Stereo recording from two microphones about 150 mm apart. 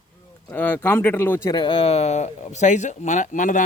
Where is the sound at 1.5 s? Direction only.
35° left (ahead or behind).